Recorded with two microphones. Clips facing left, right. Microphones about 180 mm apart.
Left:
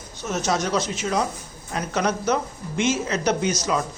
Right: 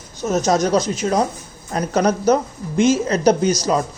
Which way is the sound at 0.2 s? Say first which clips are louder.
Right 7 dB; 40° right (ahead or behind).